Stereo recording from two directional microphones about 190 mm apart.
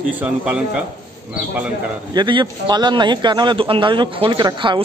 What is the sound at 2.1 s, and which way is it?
A man's voice, 25° right (ahead or behind).